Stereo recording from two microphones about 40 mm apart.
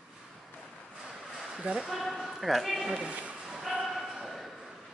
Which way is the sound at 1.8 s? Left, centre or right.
Centre.